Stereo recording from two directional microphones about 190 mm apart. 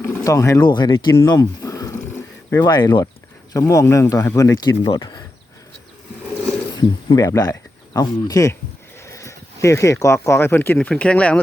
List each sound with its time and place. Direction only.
0.0 s speech: 15° left (ahead or behind)
6.7 s speech: 20° left (ahead or behind)